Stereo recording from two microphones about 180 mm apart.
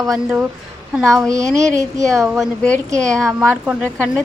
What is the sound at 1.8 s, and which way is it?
Speech, 15° right (ahead or behind).